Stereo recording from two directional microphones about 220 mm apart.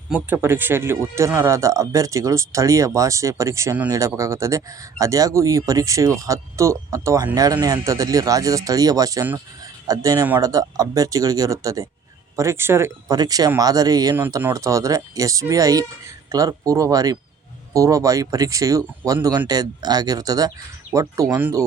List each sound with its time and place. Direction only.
0.1 s speech: 5° right (ahead or behind)